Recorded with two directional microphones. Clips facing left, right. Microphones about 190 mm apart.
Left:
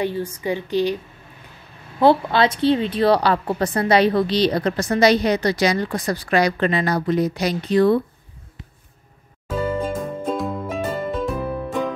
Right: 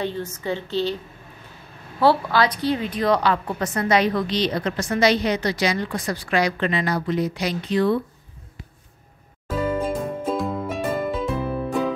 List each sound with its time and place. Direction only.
0.0 s a woman's voice: 10° left (ahead or behind)
2.0 s a woman's voice: 20° left (ahead or behind); by 8.0 s 40° left (ahead or behind)
9.5 s music: 5° right (ahead or behind)